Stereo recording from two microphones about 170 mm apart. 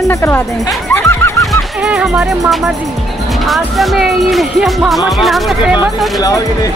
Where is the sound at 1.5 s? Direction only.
5° right (ahead or behind).